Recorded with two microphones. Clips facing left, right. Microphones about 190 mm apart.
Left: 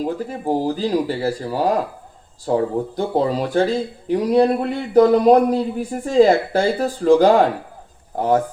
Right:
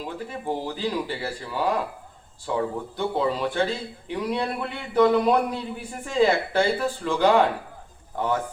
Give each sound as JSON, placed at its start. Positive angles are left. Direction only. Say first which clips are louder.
{"t": 0.0, "sound": "speech", "louder": "left 8 dB", "side_deg": 40}